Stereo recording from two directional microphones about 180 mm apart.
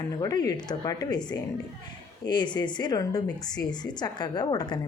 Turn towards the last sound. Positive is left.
turn(degrees=20)  # may be behind; listen again after turning